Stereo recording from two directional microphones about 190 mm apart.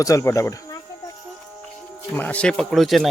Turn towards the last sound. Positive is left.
turn(degrees=0)  # may be behind; listen again after turning